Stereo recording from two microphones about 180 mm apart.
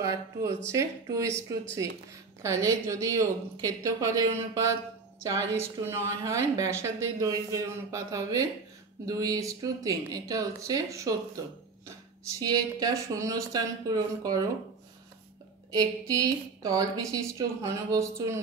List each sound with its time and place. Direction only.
0.0 s a woman's voice: 15° right (ahead or behind)
12.4 s a woman's voice: 20° right (ahead or behind)
15.7 s a woman's voice: 20° right (ahead or behind)